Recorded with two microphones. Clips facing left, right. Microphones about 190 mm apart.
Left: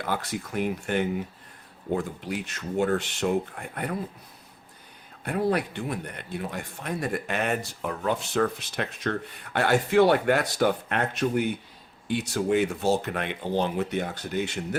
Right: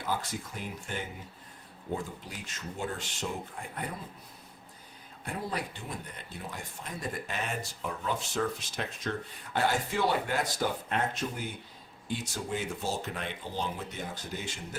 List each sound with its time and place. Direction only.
0.0 s speech: 65° left (ahead or behind)
5.2 s speech: 65° left (ahead or behind)